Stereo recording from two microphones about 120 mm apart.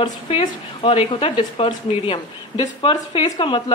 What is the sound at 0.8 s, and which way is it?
Speech, 50° left (ahead or behind).